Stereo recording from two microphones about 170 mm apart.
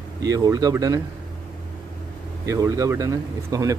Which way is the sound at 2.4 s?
20° right (ahead or behind).